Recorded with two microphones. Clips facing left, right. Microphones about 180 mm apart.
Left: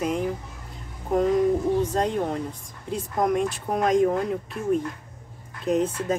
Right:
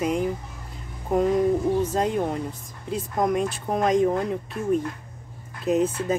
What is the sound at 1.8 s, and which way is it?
Speech, 5° right (ahead or behind).